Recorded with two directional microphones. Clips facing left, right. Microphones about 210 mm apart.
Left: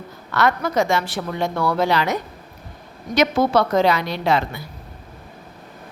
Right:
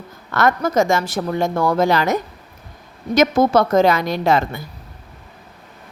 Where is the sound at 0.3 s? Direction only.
45° right (ahead or behind).